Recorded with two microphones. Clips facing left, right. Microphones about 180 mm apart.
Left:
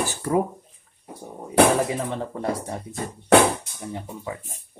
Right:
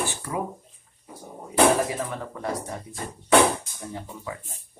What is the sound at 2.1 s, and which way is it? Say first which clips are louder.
Speech: left 4 dB; 30° left (ahead or behind).